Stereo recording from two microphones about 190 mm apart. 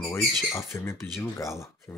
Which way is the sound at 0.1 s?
15° left (ahead or behind).